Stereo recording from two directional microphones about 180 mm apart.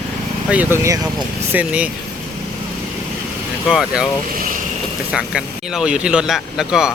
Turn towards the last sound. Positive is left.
turn(degrees=-5)  # may be behind; listen again after turning